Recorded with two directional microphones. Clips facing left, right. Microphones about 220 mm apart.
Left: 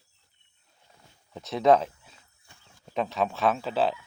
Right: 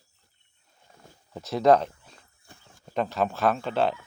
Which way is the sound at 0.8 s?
50° right (ahead or behind).